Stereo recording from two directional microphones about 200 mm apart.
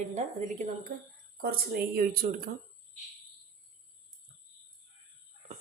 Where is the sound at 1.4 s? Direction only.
50° right (ahead or behind).